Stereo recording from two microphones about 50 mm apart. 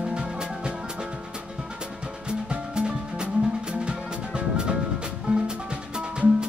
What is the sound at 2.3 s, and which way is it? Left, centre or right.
Music, centre.